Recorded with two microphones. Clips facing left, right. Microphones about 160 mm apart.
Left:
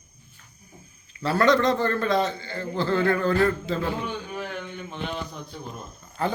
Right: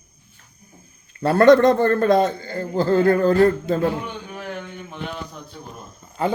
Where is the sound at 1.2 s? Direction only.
50° right (ahead or behind).